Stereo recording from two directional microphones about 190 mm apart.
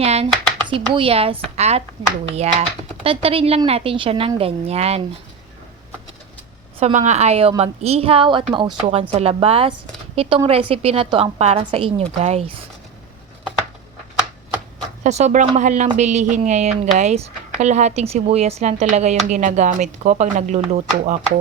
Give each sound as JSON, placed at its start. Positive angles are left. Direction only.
{"t": 0.0, "sound": "a sound", "side_deg": -35}
{"t": 0.6, "sound": "a woman's voice", "side_deg": -25}
{"t": 6.7, "sound": "a woman's voice", "side_deg": -35}
{"t": 15.0, "sound": "a woman's voice", "side_deg": -35}